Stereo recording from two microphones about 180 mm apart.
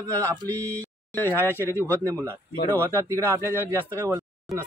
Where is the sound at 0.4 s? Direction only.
15° right (ahead or behind).